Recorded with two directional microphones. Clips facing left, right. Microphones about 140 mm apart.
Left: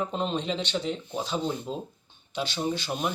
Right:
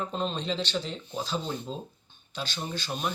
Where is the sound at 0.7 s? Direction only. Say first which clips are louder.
Left 3 dB; 5° left (ahead or behind).